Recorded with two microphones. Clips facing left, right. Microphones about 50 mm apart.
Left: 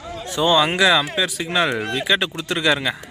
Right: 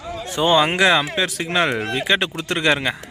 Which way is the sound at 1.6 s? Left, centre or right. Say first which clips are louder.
Even; right.